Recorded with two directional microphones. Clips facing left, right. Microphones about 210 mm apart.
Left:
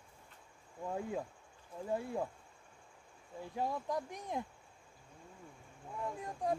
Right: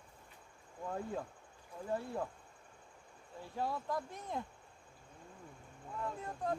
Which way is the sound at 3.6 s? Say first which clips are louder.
Left 1 dB; 15° left (ahead or behind).